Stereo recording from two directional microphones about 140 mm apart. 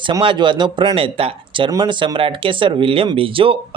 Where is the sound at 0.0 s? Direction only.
35° right (ahead or behind).